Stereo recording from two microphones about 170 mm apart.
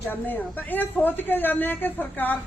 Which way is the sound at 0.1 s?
10° left (ahead or behind).